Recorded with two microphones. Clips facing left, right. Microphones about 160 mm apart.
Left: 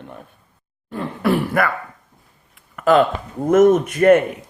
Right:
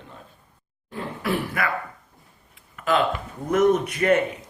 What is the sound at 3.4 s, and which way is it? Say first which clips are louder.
Speech: left 6 dB; 45° left (ahead or behind).